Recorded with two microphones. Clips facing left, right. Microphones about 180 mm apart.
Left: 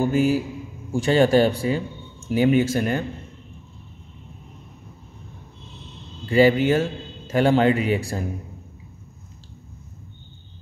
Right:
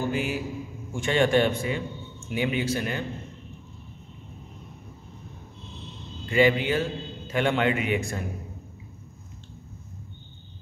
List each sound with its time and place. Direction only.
0.1 s a man's voice: 40° left (ahead or behind)
6.2 s a man's voice: 35° left (ahead or behind)